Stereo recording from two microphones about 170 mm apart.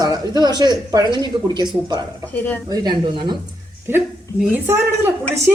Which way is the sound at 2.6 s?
25° right (ahead or behind).